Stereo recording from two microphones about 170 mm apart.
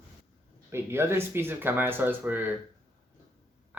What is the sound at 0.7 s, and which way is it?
Speech, 15° right (ahead or behind).